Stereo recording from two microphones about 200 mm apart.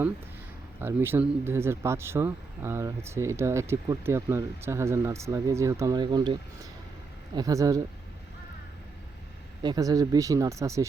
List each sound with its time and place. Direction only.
0.8 s speech: 10° right (ahead or behind)
9.6 s speech: 20° right (ahead or behind)